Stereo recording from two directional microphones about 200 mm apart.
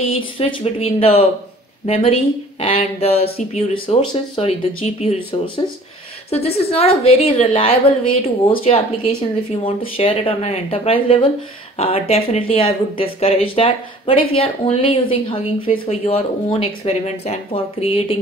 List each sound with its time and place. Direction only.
0.2 s speech: 25° left (ahead or behind)
2.6 s a sound: 30° left (ahead or behind)
3.3 s speech: 30° left (ahead or behind)